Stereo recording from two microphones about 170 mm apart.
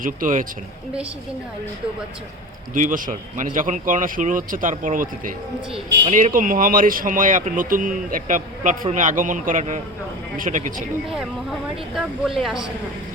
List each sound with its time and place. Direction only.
0.0 s speech: 50° right (ahead or behind)
2.7 s speech: 50° right (ahead or behind)
11.9 s speech: centre (ahead or behind)